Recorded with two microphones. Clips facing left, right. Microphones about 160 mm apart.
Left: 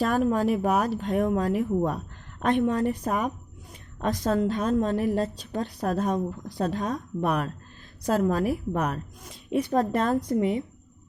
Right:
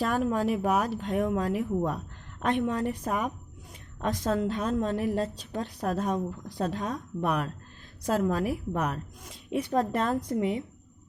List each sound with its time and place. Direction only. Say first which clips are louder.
0.0 s a woman's voice: left 3 dB; 45° left (ahead or behind)